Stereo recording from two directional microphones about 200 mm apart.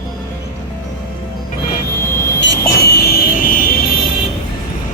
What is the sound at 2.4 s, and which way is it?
Vehicle, 50° left (ahead or behind).